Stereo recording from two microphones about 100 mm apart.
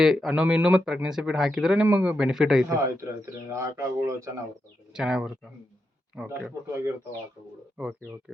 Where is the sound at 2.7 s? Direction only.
30° right (ahead or behind).